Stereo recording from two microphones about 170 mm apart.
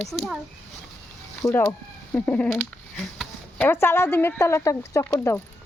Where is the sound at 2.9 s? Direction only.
Centre (ahead or behind).